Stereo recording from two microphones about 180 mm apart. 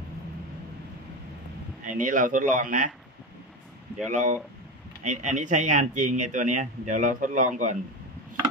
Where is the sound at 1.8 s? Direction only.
45° right (ahead or behind).